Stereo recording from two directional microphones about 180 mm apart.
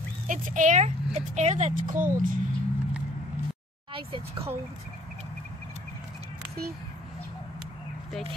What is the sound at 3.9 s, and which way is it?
Speech, 30° right (ahead or behind).